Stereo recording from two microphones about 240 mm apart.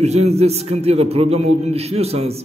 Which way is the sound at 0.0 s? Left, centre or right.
Right.